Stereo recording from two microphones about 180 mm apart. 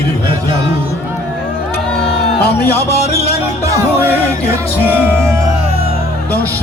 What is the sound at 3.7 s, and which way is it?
Music, 15° right (ahead or behind).